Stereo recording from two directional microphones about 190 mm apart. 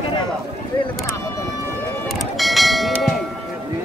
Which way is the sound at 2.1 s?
Centre (ahead or behind).